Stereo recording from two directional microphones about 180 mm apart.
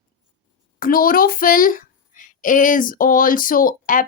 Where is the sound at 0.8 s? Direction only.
50° left (ahead or behind).